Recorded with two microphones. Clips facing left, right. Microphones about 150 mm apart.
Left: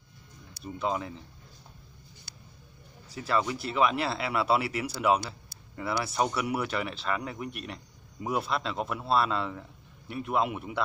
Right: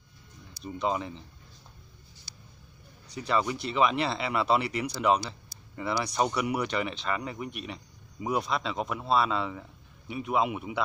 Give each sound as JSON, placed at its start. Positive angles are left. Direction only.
{"t": 0.7, "sound": "speech", "side_deg": 0}
{"t": 2.3, "sound": "a sound", "side_deg": 60}
{"t": 3.1, "sound": "speech", "side_deg": 0}